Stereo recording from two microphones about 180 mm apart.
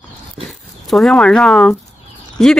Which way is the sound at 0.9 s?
Centre (ahead or behind).